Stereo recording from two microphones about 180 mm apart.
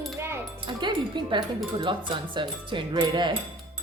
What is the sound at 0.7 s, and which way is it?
Speech, 25° right (ahead or behind).